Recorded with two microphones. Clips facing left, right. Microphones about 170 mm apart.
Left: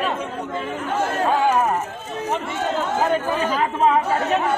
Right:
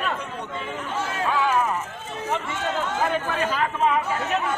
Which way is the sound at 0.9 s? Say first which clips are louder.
Left 5 dB; 50° left (ahead or behind).